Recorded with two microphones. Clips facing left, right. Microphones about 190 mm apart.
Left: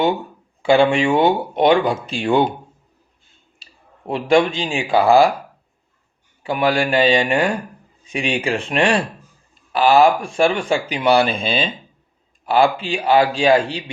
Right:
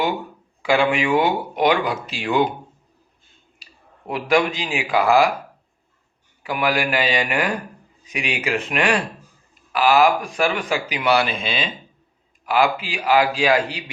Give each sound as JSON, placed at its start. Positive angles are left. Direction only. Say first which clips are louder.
{"t": 0.6, "sound": "speech", "louder": "left 5 dB", "side_deg": 30}
{"t": 3.6, "sound": "speech", "louder": "left 4 dB", "side_deg": 25}
{"t": 6.4, "sound": "speech", "louder": "left 4 dB", "side_deg": 30}